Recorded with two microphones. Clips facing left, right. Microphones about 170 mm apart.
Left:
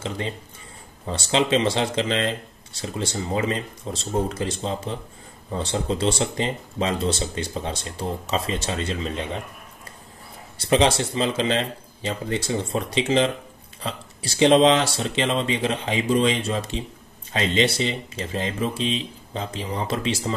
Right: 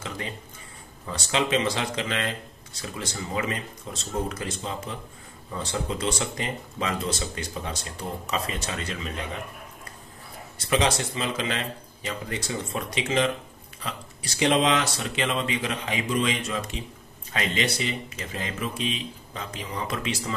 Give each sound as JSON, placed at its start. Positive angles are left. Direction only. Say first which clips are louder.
{"t": 0.0, "sound": "speech", "louder": "left 5 dB", "side_deg": 25}
{"t": 10.7, "sound": "speech", "louder": "left 5 dB", "side_deg": 30}